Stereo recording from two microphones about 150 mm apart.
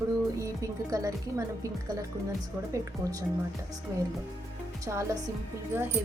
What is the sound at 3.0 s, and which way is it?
Speech, 25° right (ahead or behind).